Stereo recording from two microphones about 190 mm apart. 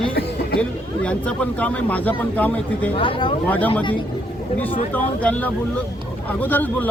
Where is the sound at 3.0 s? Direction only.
25° left (ahead or behind).